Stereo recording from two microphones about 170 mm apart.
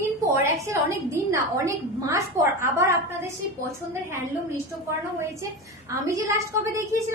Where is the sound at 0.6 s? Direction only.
15° right (ahead or behind).